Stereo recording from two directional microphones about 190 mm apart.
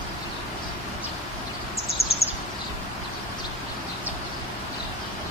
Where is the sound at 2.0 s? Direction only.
30° left (ahead or behind).